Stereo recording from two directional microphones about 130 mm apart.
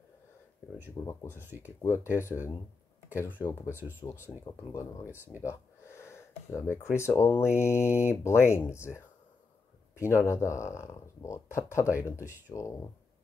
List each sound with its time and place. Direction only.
1.0 s speech: 35° left (ahead or behind)
1.3 s speech: 15° right (ahead or behind)
2.1 s speech: 20° left (ahead or behind)